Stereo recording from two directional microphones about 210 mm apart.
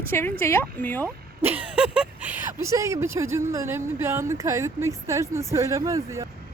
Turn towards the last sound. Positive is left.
turn(degrees=-15)  # may be behind; listen again after turning